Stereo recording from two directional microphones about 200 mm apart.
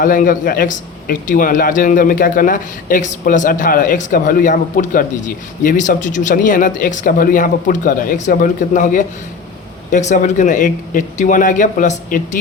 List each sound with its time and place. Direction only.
0.0 s a man's voice: 40° left (ahead or behind)